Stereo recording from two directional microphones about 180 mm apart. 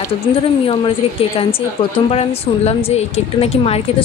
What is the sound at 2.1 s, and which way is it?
Speech, 35° left (ahead or behind).